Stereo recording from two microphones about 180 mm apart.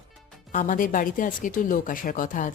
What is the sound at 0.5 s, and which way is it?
A woman's voice, 45° left (ahead or behind).